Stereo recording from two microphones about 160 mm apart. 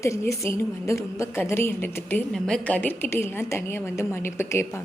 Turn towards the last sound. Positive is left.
turn(degrees=15)  # may be behind; listen again after turning